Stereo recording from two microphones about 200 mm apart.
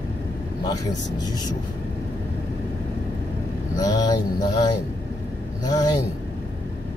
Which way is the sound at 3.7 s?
20° left (ahead or behind).